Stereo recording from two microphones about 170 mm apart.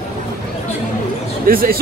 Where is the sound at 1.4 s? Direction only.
60° right (ahead or behind).